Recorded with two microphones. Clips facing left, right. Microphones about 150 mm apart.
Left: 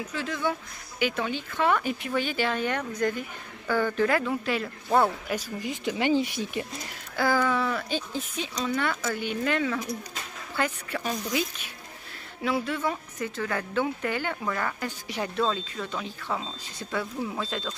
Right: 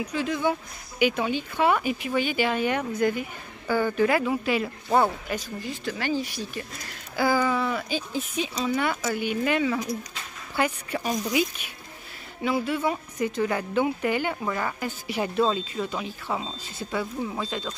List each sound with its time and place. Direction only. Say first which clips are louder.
0.0 s a woman's voice: right 4 dB; 15° right (ahead or behind); by 5.4 s centre (ahead or behind)
5.6 s speech: left 3 dB; 15° left (ahead or behind)
7.2 s a woman's voice: right 1 dB; 5° right (ahead or behind)
12.4 s a woman's voice: right 2 dB; centre (ahead or behind)